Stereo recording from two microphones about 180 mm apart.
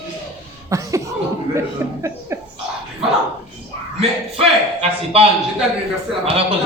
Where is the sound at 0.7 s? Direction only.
15° right (ahead or behind).